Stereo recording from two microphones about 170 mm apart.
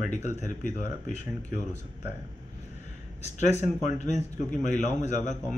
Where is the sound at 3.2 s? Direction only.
40° left (ahead or behind).